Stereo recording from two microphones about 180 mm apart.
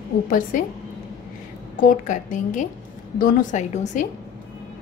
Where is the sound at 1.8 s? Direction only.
50° left (ahead or behind).